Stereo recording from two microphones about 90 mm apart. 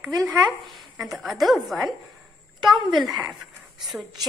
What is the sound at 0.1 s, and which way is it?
Speech, 40° right (ahead or behind).